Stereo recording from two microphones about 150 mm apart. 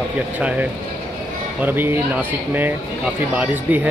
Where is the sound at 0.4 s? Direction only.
10° right (ahead or behind).